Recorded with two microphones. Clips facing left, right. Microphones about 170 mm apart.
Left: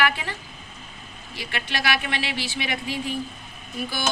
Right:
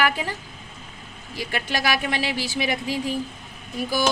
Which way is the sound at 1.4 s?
40° right (ahead or behind).